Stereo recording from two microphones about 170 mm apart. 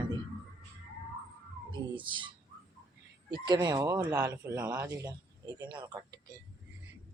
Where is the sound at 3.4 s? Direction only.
25° right (ahead or behind).